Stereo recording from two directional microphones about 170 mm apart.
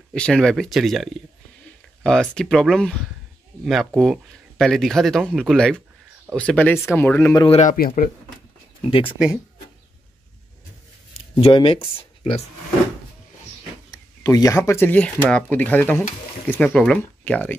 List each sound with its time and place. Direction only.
0.1 s speech: 5° left (ahead or behind)
7.3 s speech: 30° left (ahead or behind)
7.6 s speech: 55° left (ahead or behind)
8.8 s speech: 30° left (ahead or behind)
11.4 s speech: 35° left (ahead or behind)
13.8 s speech: 20° left (ahead or behind)